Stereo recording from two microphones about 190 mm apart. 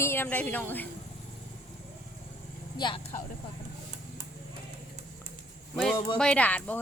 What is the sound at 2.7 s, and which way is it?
Speech, 25° left (ahead or behind).